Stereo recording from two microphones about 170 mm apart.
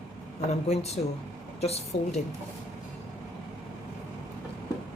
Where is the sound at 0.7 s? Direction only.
40° left (ahead or behind).